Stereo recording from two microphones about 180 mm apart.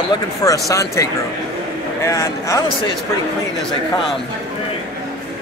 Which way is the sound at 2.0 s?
15° left (ahead or behind).